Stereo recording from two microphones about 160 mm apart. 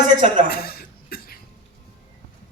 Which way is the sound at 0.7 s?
70° left (ahead or behind).